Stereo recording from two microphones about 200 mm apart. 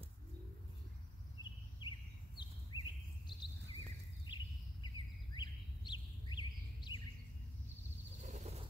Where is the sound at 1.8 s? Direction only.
20° left (ahead or behind).